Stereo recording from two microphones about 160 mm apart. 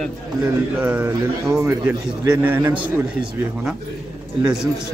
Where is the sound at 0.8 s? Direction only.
10° right (ahead or behind).